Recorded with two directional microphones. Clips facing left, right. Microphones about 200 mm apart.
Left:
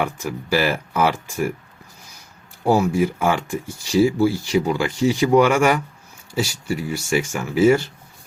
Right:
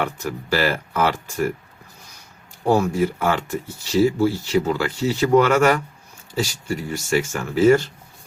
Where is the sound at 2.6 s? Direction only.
10° left (ahead or behind).